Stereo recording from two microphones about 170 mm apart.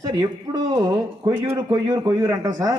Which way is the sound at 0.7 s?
20° right (ahead or behind).